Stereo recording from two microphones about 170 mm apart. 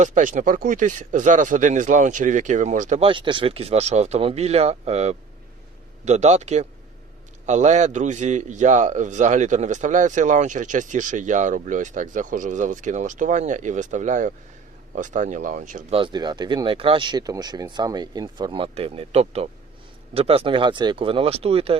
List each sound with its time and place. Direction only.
0.0 s a man's voice: 50° right (ahead or behind)
3.0 s a man's voice: 30° right (ahead or behind); by 15.8 s 50° right (ahead or behind)
15.9 s speech: 30° right (ahead or behind)